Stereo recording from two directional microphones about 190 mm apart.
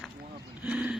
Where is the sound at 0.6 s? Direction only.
5° right (ahead or behind).